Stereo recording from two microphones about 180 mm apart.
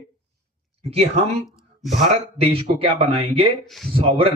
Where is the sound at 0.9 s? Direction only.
35° right (ahead or behind).